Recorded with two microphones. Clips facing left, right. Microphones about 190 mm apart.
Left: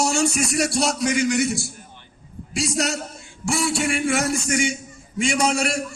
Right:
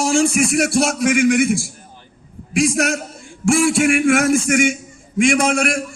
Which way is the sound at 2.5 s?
55° right (ahead or behind).